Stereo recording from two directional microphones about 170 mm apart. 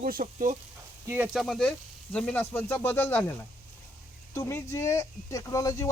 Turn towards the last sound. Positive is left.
turn(degrees=20)  # may be behind; listen again after turning